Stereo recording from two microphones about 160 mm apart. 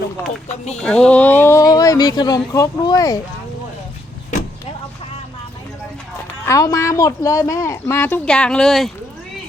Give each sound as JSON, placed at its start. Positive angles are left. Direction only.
{"t": 0.8, "sound": "speech", "side_deg": 5}
{"t": 6.4, "sound": "speech", "side_deg": 20}